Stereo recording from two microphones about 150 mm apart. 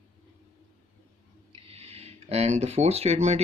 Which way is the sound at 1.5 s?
40° right (ahead or behind).